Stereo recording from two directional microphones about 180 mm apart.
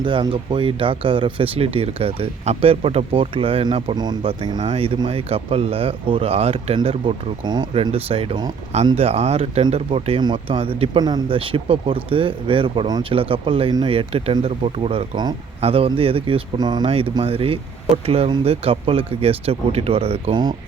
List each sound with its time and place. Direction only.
0.0 s speech: 25° right (ahead or behind)